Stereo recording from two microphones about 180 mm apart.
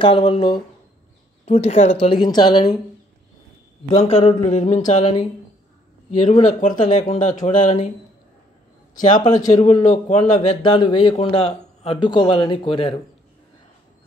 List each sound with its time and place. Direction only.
0.0 s speech: 30° left (ahead or behind)
3.9 s speech: 40° left (ahead or behind)
6.1 s speech: 40° left (ahead or behind)
9.3 s speech: 20° left (ahead or behind)
9.8 s speech: 40° left (ahead or behind)